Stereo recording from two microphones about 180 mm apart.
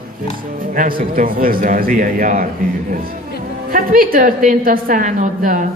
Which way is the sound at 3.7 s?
50° right (ahead or behind).